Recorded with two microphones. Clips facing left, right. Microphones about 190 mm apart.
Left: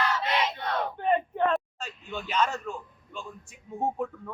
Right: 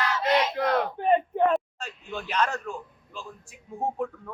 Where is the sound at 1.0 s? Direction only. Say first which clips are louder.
Right 2 dB; 25° right (ahead or behind).